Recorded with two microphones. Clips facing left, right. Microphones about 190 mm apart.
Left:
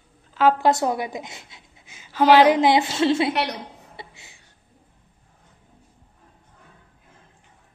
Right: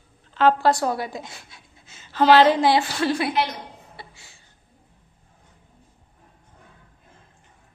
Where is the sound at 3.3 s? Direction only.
70° left (ahead or behind).